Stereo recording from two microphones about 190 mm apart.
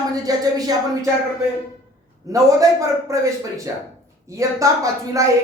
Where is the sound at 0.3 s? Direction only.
20° right (ahead or behind).